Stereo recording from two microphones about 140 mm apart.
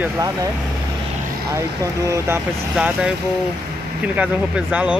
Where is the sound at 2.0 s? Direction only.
20° right (ahead or behind).